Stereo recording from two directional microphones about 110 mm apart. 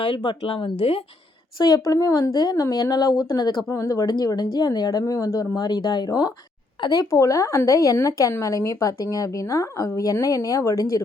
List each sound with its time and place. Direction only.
0.0 s speech: 45° left (ahead or behind); by 1.0 s 65° left (ahead or behind)
1.5 s a woman's voice: 35° left (ahead or behind)